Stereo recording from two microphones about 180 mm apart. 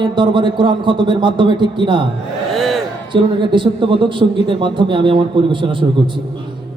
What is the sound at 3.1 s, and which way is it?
A man's voice, 25° right (ahead or behind).